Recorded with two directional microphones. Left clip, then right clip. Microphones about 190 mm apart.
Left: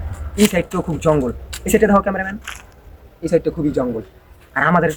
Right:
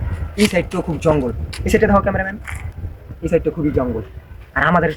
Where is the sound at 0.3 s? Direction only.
5° left (ahead or behind).